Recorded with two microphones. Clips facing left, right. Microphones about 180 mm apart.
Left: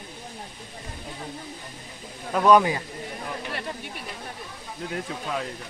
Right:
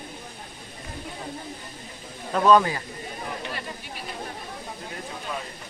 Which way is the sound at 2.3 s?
10° left (ahead or behind).